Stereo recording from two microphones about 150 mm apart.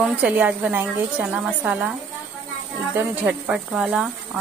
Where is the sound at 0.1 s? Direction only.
10° right (ahead or behind).